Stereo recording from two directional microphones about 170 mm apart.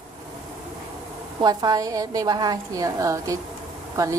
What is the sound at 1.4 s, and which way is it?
A woman's voice, 25° right (ahead or behind).